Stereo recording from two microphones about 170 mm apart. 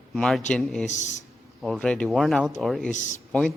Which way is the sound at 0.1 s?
Centre (ahead or behind).